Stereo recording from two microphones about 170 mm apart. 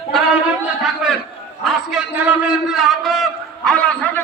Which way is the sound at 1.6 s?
Centre (ahead or behind).